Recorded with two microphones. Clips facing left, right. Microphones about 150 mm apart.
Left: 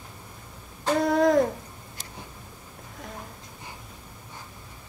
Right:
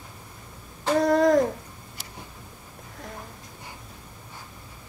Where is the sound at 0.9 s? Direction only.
Centre (ahead or behind).